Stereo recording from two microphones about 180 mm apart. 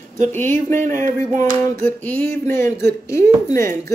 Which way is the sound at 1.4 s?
10° left (ahead or behind).